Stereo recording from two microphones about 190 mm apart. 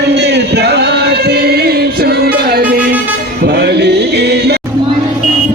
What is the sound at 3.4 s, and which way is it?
Music, 60° right (ahead or behind).